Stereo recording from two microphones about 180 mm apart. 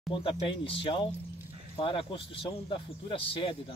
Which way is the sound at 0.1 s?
30° left (ahead or behind).